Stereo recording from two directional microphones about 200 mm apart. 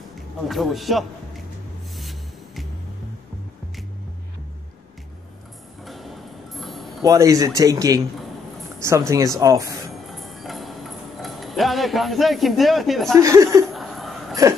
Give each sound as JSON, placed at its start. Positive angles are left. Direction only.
{"t": 0.5, "sound": "a man's voice", "side_deg": 0}
{"t": 2.0, "sound": "music", "side_deg": 0}
{"t": 5.9, "sound": "music", "side_deg": 0}
{"t": 7.0, "sound": "speech", "side_deg": -20}
{"t": 10.1, "sound": "a sound", "side_deg": 0}
{"t": 13.1, "sound": "speech", "side_deg": -15}
{"t": 13.7, "sound": "chuckle", "side_deg": 0}